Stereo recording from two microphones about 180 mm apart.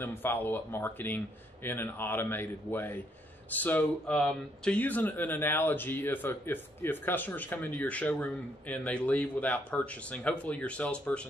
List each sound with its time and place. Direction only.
0.0 s speech: 10° left (ahead or behind)